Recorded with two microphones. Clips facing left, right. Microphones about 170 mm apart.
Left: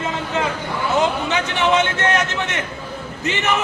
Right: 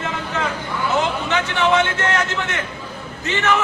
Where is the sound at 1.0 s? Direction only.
20° left (ahead or behind).